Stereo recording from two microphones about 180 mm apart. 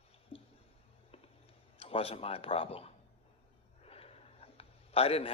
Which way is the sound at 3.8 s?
35° left (ahead or behind).